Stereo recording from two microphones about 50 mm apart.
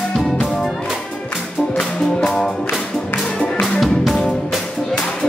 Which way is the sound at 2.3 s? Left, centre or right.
Centre.